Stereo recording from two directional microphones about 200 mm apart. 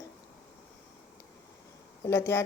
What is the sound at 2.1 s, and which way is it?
Speech, 15° left (ahead or behind).